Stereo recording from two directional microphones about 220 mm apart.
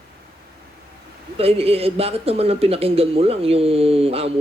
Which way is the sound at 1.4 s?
25° right (ahead or behind).